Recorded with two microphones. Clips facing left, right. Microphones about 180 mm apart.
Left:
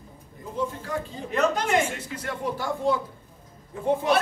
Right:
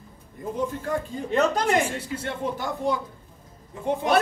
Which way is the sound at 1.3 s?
35° right (ahead or behind).